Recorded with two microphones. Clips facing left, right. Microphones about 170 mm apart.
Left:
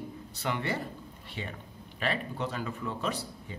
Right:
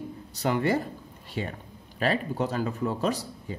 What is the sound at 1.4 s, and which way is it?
A woman's voice, 40° right (ahead or behind).